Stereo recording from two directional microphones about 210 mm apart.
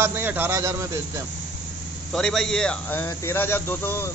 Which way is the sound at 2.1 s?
Centre (ahead or behind).